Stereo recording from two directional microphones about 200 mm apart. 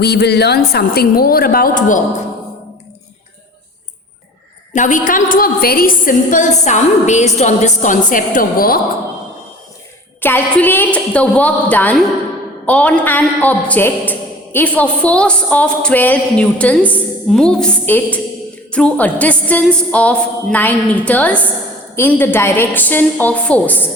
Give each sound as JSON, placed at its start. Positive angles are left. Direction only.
{"t": 0.0, "sound": "a woman's voice", "side_deg": 55}
{"t": 4.7, "sound": "a woman's voice", "side_deg": 40}
{"t": 10.2, "sound": "a man's voice", "side_deg": 10}